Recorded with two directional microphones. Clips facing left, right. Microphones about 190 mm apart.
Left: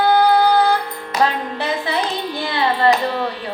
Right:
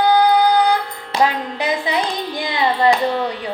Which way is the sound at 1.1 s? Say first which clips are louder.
Right 1 dB; 30° right (ahead or behind).